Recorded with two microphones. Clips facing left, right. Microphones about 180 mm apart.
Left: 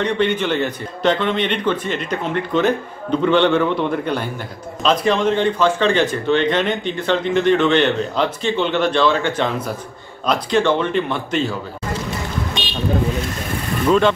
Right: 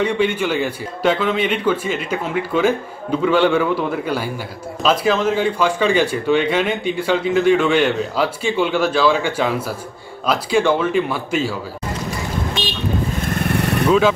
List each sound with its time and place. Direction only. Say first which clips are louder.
0.0 s speech: even; 10° right (ahead or behind)
13.3 s vehicle: right 5 dB; 65° right (ahead or behind)
13.8 s speech: even; 5° right (ahead or behind)